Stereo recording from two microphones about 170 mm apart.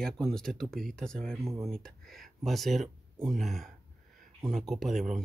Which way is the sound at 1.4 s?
15° right (ahead or behind).